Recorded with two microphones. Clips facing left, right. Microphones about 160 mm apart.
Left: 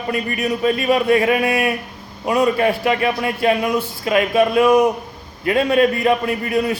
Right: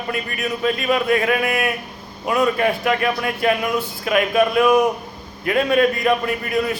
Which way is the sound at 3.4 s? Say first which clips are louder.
Left 2 dB; 30° left (ahead or behind).